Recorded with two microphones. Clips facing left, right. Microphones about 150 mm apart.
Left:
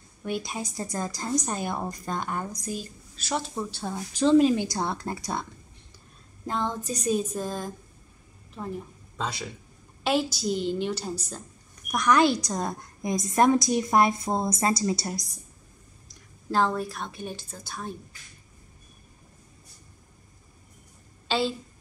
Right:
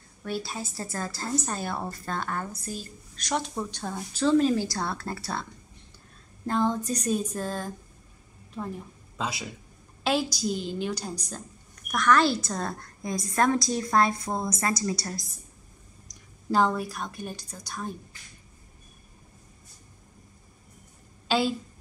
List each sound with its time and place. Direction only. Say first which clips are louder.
0.2 s a woman's voice: left 1 dB; 15° left (ahead or behind)
6.7 s a woman's voice: even; 5° left (ahead or behind)
9.1 s a man's voice: even; 5° right (ahead or behind)
11.9 s a woman's voice: left 1 dB; 20° left (ahead or behind)
16.4 s a woman's voice: right 1 dB; 5° right (ahead or behind)